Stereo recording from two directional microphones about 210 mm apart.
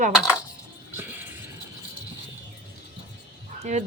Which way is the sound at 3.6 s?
35° right (ahead or behind).